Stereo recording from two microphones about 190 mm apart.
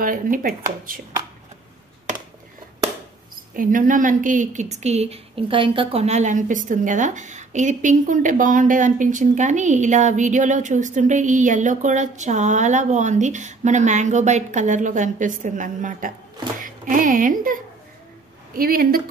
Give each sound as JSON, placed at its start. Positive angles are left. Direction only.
{"t": 0.0, "sound": "speech", "side_deg": -45}
{"t": 3.5, "sound": "a woman's voice", "side_deg": -45}
{"t": 18.6, "sound": "speech", "side_deg": -50}